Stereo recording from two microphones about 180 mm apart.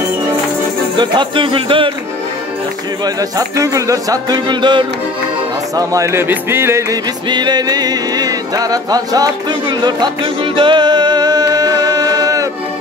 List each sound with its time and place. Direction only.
0.9 s speech: 25° right (ahead or behind)
3.2 s speech: 20° right (ahead or behind)
5.8 s music: 15° right (ahead or behind)